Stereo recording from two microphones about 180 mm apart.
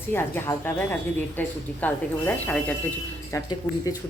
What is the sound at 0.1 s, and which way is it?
A woman's voice, 10° left (ahead or behind).